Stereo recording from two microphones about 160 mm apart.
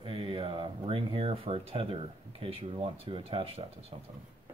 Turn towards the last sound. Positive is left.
turn(degrees=-35)  # may be behind; listen again after turning